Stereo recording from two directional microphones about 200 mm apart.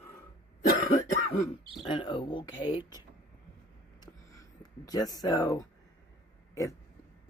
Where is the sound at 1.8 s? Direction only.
25° left (ahead or behind).